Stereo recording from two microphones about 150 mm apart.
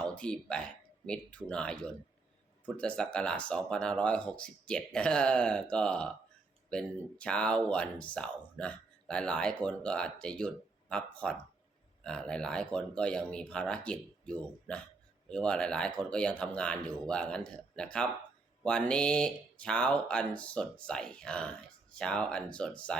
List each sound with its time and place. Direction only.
0.0 s speech: 5° left (ahead or behind)